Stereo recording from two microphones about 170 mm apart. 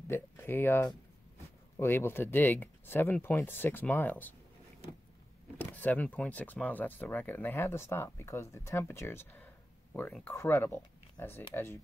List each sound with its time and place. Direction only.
0.1 s speech: 15° left (ahead or behind)
5.6 s speech: 10° left (ahead or behind)